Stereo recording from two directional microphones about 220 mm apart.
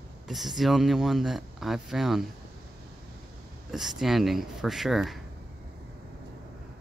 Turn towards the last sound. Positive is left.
turn(degrees=0)  # may be behind; listen again after turning